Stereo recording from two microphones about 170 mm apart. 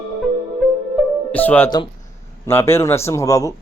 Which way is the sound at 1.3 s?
10° left (ahead or behind).